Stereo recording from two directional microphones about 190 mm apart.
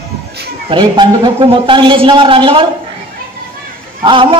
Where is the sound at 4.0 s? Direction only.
25° right (ahead or behind).